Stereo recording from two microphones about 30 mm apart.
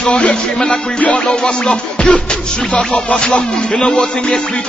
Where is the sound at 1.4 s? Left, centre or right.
Left.